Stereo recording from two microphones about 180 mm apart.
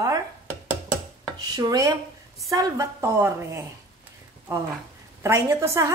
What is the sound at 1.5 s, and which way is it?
A woman's voice, 20° right (ahead or behind).